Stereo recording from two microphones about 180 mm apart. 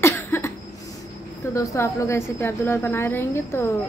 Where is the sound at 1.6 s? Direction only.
15° left (ahead or behind).